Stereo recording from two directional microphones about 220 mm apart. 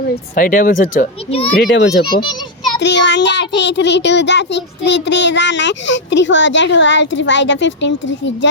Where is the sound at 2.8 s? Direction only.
55° left (ahead or behind).